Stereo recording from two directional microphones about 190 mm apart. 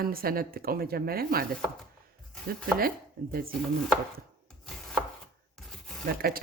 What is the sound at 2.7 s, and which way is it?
Speech, 50° right (ahead or behind).